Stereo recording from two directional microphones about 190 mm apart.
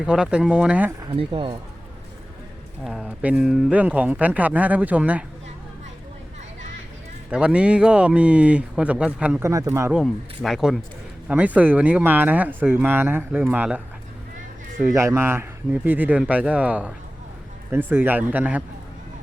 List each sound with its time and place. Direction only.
0.0 s speech: 5° right (ahead or behind)
1.0 s speech: 25° right (ahead or behind)
2.8 s speech: 5° right (ahead or behind)
7.3 s speech: 5° right (ahead or behind)
9.9 s speech: centre (ahead or behind)
14.9 s speech: 15° right (ahead or behind)